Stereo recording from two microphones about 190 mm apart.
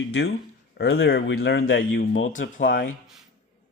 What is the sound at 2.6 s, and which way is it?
Speech, 50° left (ahead or behind).